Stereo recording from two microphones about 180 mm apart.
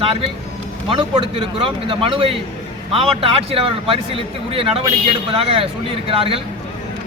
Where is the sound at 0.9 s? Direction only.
30° right (ahead or behind).